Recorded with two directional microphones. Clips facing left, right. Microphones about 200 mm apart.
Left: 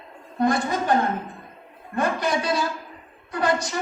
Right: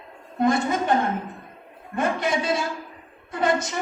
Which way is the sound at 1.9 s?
25° right (ahead or behind).